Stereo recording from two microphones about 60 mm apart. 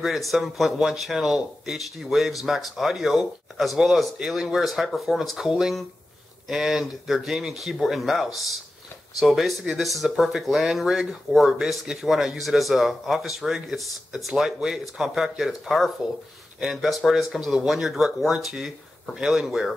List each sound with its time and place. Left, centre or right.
0.0 s speech: centre